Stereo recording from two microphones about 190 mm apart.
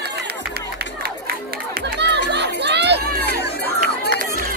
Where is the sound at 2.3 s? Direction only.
65° right (ahead or behind).